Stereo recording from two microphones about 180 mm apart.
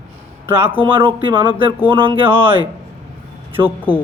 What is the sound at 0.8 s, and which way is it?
Speech, 30° right (ahead or behind).